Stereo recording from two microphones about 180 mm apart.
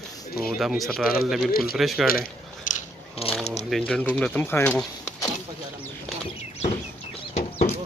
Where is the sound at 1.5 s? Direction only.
55° left (ahead or behind).